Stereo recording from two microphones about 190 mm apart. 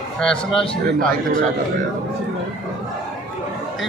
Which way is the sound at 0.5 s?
25° left (ahead or behind).